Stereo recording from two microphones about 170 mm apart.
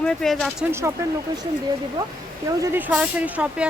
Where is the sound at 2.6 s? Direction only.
10° right (ahead or behind).